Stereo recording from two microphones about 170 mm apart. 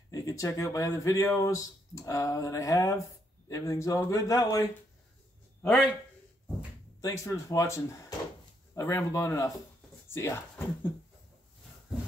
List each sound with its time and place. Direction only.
0.1 s speech: 20° left (ahead or behind)
7.0 s speech: 20° left (ahead or behind)